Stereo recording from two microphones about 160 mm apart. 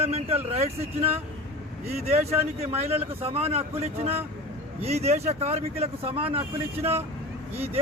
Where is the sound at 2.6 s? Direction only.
40° right (ahead or behind).